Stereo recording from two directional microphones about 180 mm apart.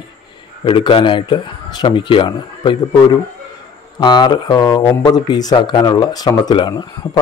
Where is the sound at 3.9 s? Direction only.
25° left (ahead or behind).